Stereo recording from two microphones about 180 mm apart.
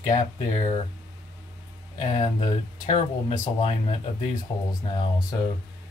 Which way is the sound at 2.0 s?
25° left (ahead or behind).